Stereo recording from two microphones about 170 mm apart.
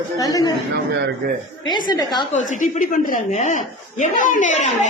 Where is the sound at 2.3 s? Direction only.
45° left (ahead or behind).